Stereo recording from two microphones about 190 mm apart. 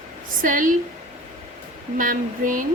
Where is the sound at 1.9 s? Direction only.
45° right (ahead or behind).